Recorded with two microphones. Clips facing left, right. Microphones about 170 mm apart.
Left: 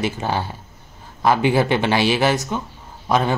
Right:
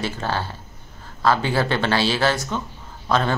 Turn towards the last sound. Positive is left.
turn(degrees=15)  # may be behind; listen again after turning